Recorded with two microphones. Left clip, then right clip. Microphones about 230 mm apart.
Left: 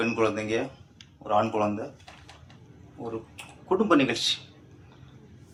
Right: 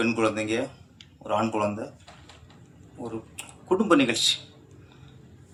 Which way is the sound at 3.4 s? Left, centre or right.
Right.